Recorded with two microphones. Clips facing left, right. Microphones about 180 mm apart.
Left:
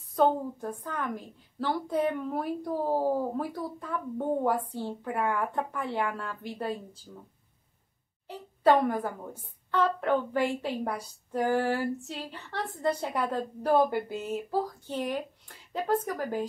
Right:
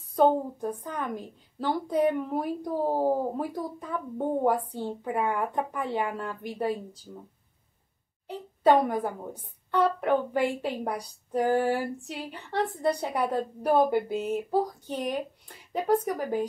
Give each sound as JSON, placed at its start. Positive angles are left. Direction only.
{"t": 0.1, "sound": "a woman's voice", "side_deg": -15}
{"t": 8.6, "sound": "a woman's voice", "side_deg": -15}